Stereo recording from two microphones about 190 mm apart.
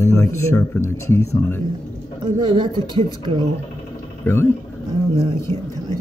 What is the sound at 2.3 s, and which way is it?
Speech, 25° right (ahead or behind).